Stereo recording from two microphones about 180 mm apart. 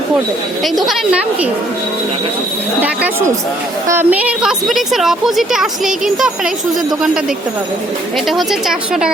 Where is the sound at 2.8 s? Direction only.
10° right (ahead or behind).